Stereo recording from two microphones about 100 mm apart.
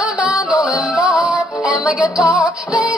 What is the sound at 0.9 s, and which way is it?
Music, 5° right (ahead or behind).